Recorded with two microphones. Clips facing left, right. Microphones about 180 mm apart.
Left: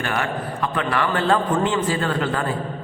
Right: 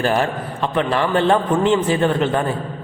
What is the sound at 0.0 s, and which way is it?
A man's voice, 30° right (ahead or behind).